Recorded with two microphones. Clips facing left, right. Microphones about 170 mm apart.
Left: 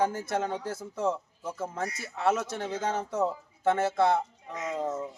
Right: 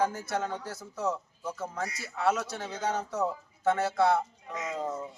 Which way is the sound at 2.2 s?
25° left (ahead or behind).